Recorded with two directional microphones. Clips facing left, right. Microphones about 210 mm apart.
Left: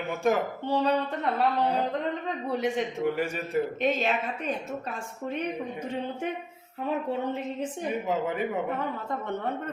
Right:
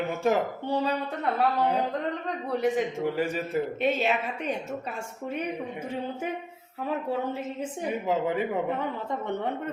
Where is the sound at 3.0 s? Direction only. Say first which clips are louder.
Even; 30° right (ahead or behind).